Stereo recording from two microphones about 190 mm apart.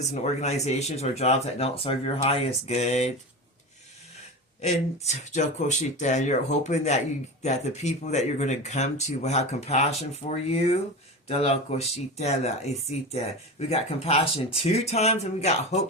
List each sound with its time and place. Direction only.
0.0 s speech: 35° left (ahead or behind)
4.6 s speech: 35° left (ahead or behind)